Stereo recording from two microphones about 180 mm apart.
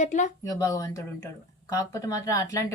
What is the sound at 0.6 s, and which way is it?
A woman's voice, 15° left (ahead or behind).